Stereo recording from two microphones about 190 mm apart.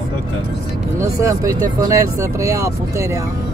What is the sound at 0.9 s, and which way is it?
Speech, 15° right (ahead or behind).